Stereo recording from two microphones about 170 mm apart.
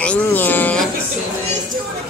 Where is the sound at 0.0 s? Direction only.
10° left (ahead or behind).